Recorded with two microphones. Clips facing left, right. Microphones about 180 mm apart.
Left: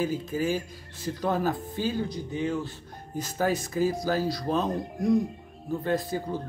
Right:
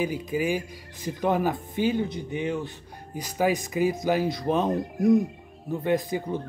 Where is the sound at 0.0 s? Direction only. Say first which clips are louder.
Right 1 dB; 15° right (ahead or behind).